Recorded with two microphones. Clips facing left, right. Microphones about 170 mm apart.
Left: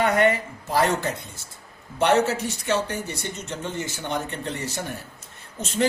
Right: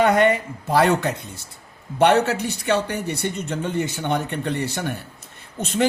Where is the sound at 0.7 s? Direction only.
65° right (ahead or behind).